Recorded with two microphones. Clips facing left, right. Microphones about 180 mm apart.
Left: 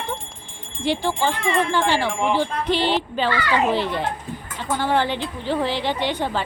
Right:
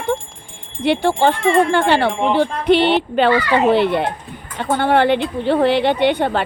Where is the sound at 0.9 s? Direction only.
65° right (ahead or behind).